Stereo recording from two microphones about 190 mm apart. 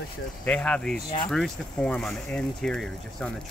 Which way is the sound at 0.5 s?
5° left (ahead or behind).